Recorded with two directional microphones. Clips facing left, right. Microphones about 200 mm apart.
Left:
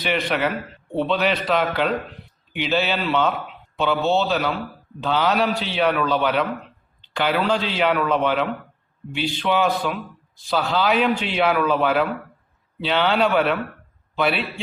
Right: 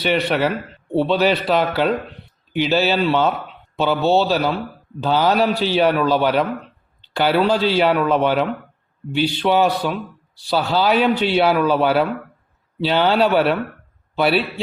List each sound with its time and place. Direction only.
0.0 s a man's voice: 35° right (ahead or behind)